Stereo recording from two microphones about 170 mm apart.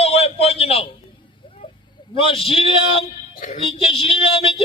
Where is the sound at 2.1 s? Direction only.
30° left (ahead or behind).